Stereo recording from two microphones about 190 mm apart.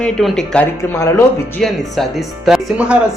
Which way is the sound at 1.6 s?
Centre (ahead or behind).